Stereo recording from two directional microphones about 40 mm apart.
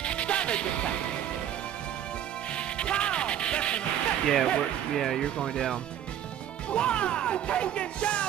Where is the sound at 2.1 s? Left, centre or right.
Left.